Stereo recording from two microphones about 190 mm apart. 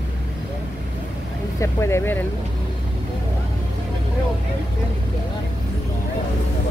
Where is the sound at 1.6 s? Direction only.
15° left (ahead or behind).